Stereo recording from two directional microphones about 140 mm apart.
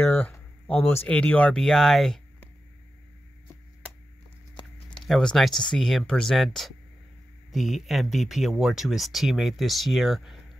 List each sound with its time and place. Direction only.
0.0 s speech: 10° left (ahead or behind)
4.9 s speech: 5° left (ahead or behind)